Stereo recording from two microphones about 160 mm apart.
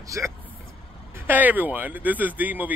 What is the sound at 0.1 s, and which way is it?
A man's voice, 20° right (ahead or behind).